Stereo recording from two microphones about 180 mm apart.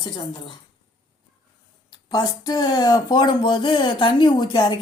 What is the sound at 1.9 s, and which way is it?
Speech, 20° left (ahead or behind).